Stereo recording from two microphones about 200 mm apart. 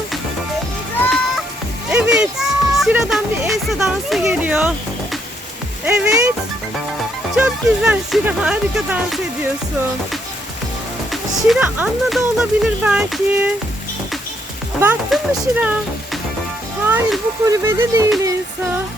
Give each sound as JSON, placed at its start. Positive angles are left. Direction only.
{"t": 1.9, "sound": "a sound", "side_deg": -5}
{"t": 5.8, "sound": "speech", "side_deg": -5}
{"t": 7.3, "sound": "speech", "side_deg": -5}
{"t": 11.1, "sound": "speech", "side_deg": 0}
{"t": 14.8, "sound": "speech", "side_deg": -10}
{"t": 16.8, "sound": "speech", "side_deg": -10}
{"t": 18.2, "sound": "female singing", "side_deg": -15}